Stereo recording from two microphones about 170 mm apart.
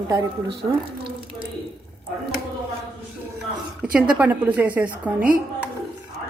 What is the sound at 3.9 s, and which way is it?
A woman's voice, 10° right (ahead or behind).